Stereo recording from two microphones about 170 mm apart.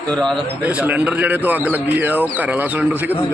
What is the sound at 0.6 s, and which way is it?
Speech, 10° right (ahead or behind).